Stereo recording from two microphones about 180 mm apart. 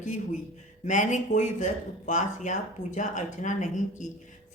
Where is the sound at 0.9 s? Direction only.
45° left (ahead or behind).